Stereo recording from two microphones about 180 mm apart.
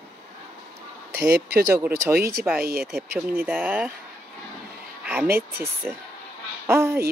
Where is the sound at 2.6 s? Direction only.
55° right (ahead or behind).